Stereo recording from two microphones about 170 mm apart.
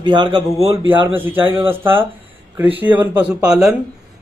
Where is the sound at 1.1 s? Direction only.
10° right (ahead or behind).